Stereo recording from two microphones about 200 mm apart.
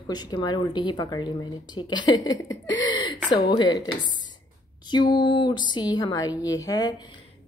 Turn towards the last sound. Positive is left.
turn(degrees=20)  # may be behind; listen again after turning